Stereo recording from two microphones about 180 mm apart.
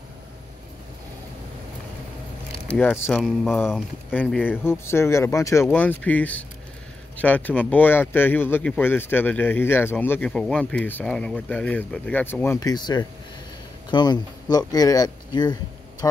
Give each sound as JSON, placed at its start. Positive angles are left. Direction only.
{"t": 2.7, "sound": "speech", "side_deg": 5}
{"t": 4.1, "sound": "speech", "side_deg": 10}